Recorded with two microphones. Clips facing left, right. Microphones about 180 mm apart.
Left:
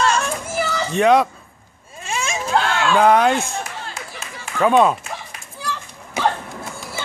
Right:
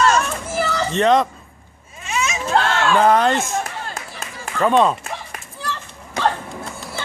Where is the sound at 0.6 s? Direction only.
Centre (ahead or behind).